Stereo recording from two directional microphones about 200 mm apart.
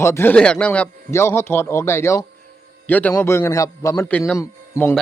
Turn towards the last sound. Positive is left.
turn(degrees=15)  # may be behind; listen again after turning